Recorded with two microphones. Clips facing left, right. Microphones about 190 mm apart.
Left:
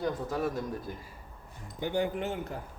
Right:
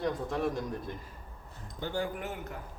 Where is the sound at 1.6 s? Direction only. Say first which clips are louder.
Left 4 dB; 15° left (ahead or behind).